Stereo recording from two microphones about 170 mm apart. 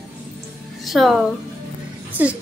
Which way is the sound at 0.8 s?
Centre (ahead or behind).